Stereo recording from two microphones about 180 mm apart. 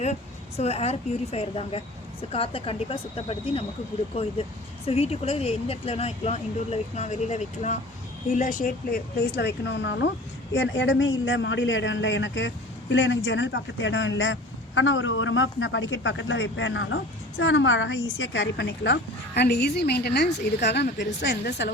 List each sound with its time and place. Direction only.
0.0 s speech: 35° left (ahead or behind); by 18.0 s 90° left
18.2 s a woman's voice: 75° left (ahead or behind)